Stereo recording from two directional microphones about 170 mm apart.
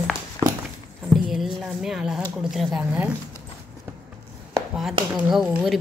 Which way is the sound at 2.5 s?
Centre (ahead or behind).